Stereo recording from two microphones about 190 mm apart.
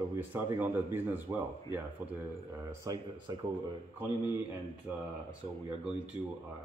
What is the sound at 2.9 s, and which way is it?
Speech, 20° right (ahead or behind).